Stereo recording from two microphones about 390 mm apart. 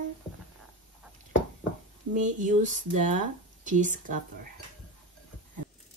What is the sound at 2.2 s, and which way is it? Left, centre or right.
Speech, centre.